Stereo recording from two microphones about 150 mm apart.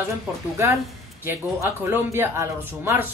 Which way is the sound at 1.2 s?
15° right (ahead or behind).